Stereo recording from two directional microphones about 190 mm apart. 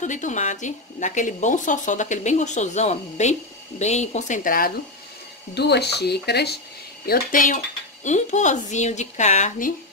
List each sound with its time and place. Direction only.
0.0 s speech: 40° left (ahead or behind)
5.5 s speech: 60° left (ahead or behind)
7.1 s speech: 45° left (ahead or behind)